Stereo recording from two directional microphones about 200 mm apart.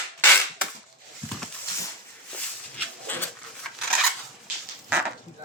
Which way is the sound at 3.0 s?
10° left (ahead or behind).